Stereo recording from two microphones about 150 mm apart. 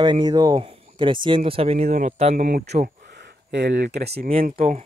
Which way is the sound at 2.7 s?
85° right.